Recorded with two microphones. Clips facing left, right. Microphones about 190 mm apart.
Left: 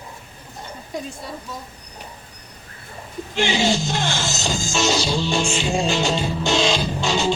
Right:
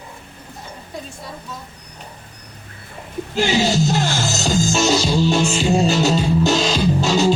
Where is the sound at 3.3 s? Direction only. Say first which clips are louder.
Right 2 dB; 40° right (ahead or behind).